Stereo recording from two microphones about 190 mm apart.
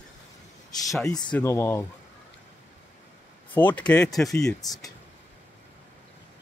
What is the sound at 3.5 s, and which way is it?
Speech, 10° left (ahead or behind).